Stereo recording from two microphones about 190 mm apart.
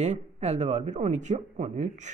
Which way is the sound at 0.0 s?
35° right (ahead or behind).